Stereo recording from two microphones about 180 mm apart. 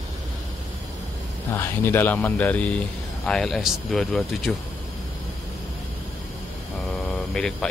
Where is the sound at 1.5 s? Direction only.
15° left (ahead or behind).